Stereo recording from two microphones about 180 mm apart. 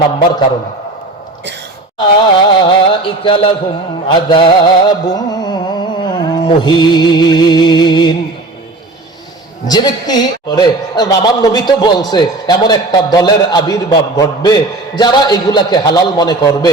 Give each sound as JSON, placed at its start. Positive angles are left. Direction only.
{"t": 2.0, "sound": "a man's voice", "side_deg": 25}
{"t": 4.1, "sound": "music", "side_deg": 25}
{"t": 9.6, "sound": "a man's voice", "side_deg": 20}